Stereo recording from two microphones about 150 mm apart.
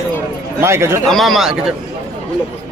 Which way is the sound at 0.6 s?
15° right (ahead or behind).